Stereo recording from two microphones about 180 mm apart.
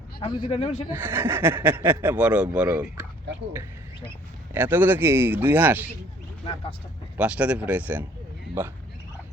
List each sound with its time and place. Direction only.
0.2 s a man's voice: 30° left (ahead or behind)
0.9 s speech: 10° right (ahead or behind)
4.5 s speech: 10° right (ahead or behind)
7.2 s speech: 5° right (ahead or behind)